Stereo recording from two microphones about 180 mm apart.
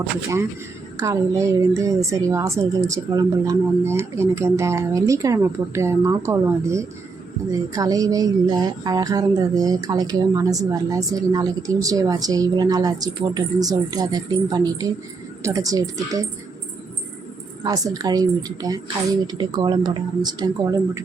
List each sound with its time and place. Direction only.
0.9 s speech: 15° right (ahead or behind)
17.6 s speech: 20° right (ahead or behind)